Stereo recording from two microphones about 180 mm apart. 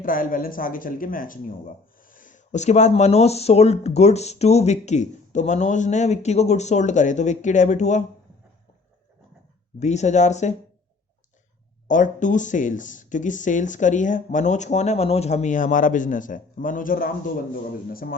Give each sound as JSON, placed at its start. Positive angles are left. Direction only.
{"t": 0.0, "sound": "speech", "side_deg": 50}
{"t": 9.8, "sound": "speech", "side_deg": 40}
{"t": 11.9, "sound": "speech", "side_deg": 45}